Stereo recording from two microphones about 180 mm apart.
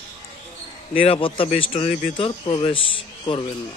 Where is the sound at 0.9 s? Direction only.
30° left (ahead or behind).